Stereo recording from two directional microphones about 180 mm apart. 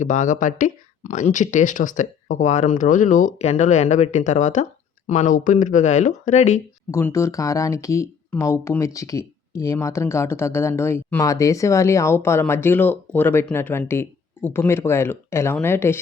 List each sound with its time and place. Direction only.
0.0 s speech: 45° left (ahead or behind)
6.9 s speech: 15° left (ahead or behind)